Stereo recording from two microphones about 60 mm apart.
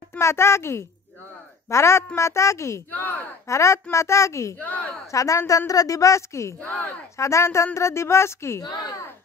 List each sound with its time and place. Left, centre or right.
0.2 s speech: left
2.9 s speech: left
3.4 s speech: left
4.6 s speech: left
5.0 s speech: left
5.7 s speech: left